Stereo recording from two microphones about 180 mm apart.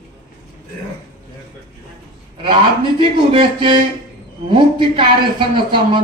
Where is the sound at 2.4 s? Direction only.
30° right (ahead or behind).